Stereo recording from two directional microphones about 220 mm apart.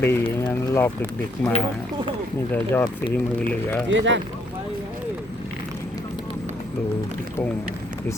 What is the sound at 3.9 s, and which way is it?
Speech, 55° right (ahead or behind).